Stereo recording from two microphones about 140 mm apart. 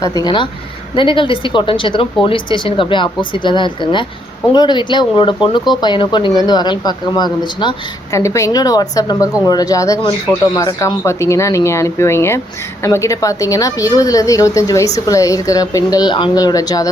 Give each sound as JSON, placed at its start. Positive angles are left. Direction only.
{"t": 0.0, "sound": "a woman's voice", "side_deg": 25}
{"t": 8.1, "sound": "a woman's voice", "side_deg": 20}